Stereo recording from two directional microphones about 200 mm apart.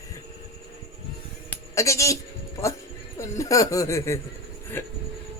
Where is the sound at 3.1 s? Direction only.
15° left (ahead or behind).